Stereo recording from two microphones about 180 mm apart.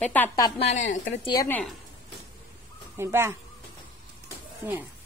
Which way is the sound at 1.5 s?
Centre (ahead or behind).